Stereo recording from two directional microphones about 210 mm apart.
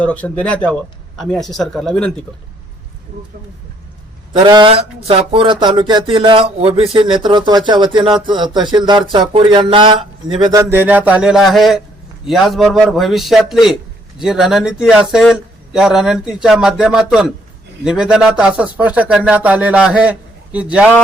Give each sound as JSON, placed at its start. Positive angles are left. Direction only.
{"t": 0.0, "sound": "speech", "side_deg": 5}
{"t": 4.4, "sound": "speech", "side_deg": -25}